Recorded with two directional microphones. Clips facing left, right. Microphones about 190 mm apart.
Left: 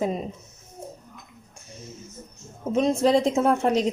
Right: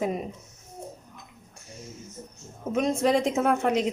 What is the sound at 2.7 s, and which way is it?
A woman's voice, 25° left (ahead or behind).